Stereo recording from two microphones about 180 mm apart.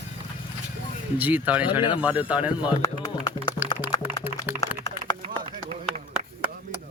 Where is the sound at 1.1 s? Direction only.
10° right (ahead or behind).